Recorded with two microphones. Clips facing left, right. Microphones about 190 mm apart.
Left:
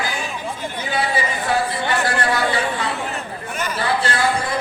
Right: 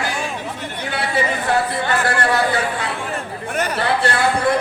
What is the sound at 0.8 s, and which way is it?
Speech, 65° right (ahead or behind).